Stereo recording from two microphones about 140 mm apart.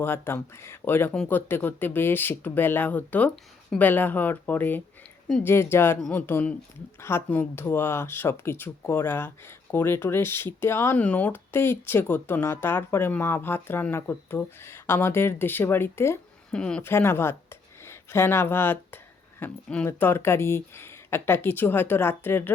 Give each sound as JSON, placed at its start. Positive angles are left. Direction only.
{"t": 0.0, "sound": "speech", "side_deg": 15}
{"t": 16.5, "sound": "speech", "side_deg": 5}
{"t": 16.8, "sound": "speech", "side_deg": 15}